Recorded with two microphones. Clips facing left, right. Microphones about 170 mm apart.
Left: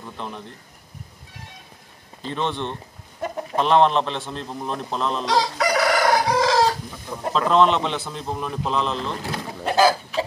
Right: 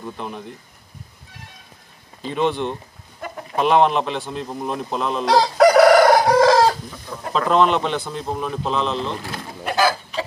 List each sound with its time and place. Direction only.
2.2 s a man's voice: 5° right (ahead or behind)
5.2 s chicken: 55° right (ahead or behind)
7.3 s a man's voice: 5° right (ahead or behind)
9.2 s speech: 25° left (ahead or behind)